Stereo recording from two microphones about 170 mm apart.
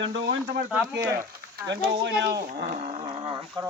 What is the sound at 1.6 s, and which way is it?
Speech, 90° right.